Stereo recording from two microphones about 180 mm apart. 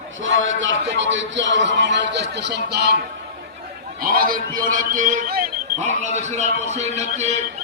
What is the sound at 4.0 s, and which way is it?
A man's voice, 55° right (ahead or behind).